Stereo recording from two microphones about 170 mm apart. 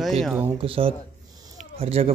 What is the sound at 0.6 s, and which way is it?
A man's voice, 30° right (ahead or behind).